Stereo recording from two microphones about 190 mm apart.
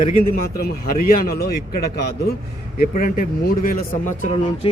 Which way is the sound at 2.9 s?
45° left (ahead or behind).